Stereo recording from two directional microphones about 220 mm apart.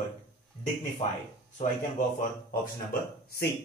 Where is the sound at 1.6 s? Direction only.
35° left (ahead or behind).